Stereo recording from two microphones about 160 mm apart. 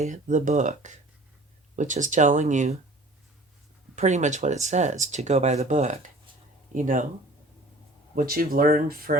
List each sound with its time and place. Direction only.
0.0 s speech: 50° right (ahead or behind)
3.9 s speech: 50° right (ahead or behind)
8.1 s speech: 65° right (ahead or behind)